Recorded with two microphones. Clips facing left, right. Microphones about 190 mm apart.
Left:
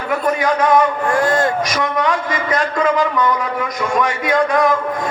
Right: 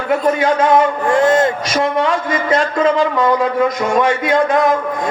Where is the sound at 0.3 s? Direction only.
25° right (ahead or behind).